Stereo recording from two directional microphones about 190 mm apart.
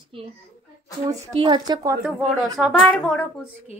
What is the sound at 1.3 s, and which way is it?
Speech, 25° right (ahead or behind).